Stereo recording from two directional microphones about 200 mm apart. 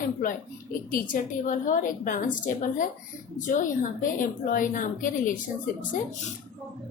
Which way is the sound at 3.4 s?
40° left (ahead or behind).